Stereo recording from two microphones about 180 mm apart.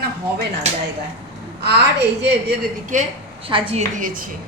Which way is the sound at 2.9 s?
40° right (ahead or behind).